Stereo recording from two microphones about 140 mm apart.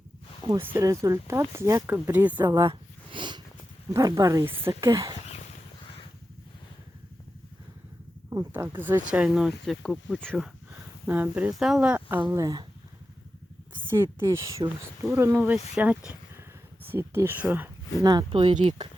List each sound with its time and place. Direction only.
0.6 s speech: 20° right (ahead or behind)
2.6 s sniff: 35° right (ahead or behind)
3.9 s speech: 25° right (ahead or behind)
8.3 s speech: 20° right (ahead or behind); by 10.5 s 5° left (ahead or behind)
11.0 s speech: 15° right (ahead or behind)
12.3 s speech: 25° right (ahead or behind)
13.9 s speech: 20° right (ahead or behind)
18.0 s speech: 30° right (ahead or behind)